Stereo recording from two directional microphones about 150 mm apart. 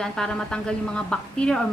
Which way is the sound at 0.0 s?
5° left (ahead or behind).